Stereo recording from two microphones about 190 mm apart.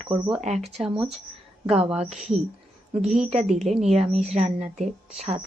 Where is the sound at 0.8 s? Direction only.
5° right (ahead or behind).